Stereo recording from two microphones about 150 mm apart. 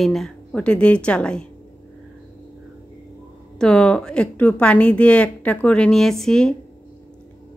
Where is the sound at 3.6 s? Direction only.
5° left (ahead or behind).